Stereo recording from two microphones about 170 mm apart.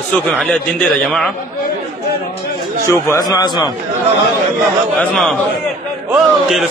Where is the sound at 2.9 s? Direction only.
15° left (ahead or behind).